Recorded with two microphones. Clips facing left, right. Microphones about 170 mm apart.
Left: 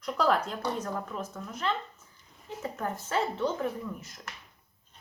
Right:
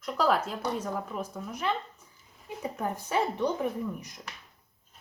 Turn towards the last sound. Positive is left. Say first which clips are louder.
# right 3 dB
turn(degrees=-15)  # may be behind; listen again after turning